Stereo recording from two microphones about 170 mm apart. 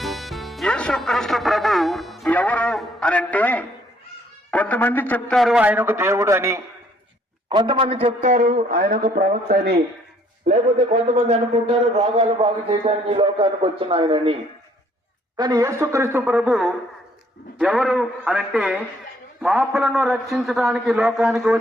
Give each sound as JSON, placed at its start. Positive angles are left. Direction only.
{"t": 0.0, "sound": "music", "side_deg": 0}
{"t": 4.5, "sound": "a man's voice", "side_deg": 10}
{"t": 7.5, "sound": "a man's voice", "side_deg": -30}
{"t": 10.4, "sound": "a man's voice", "side_deg": -40}
{"t": 15.4, "sound": "a man's voice", "side_deg": -25}